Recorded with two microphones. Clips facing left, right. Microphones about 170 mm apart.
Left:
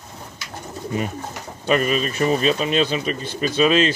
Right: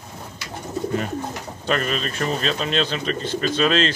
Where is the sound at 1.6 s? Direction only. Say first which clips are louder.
Left 4 dB; 15° left (ahead or behind).